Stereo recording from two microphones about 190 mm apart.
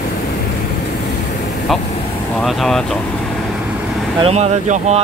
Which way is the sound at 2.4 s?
Centre (ahead or behind).